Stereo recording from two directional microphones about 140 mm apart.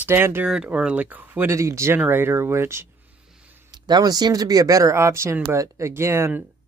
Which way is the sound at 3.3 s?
10° right (ahead or behind).